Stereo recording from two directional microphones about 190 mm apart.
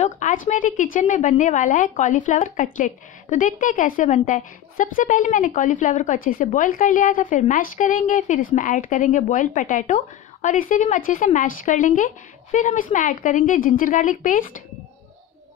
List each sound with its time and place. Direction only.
0.0 s speech: 40° left (ahead or behind)